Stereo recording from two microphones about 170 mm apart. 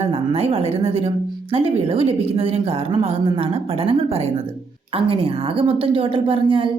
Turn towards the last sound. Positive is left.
turn(degrees=-30)  # may be behind; listen again after turning